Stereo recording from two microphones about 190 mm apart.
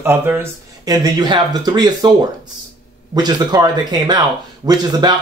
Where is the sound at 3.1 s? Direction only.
20° right (ahead or behind).